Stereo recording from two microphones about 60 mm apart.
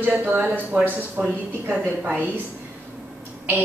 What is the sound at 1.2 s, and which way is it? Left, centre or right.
A woman's voice, centre.